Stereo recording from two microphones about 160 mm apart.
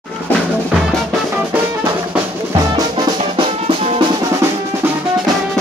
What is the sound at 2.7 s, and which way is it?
Drum, 25° right (ahead or behind).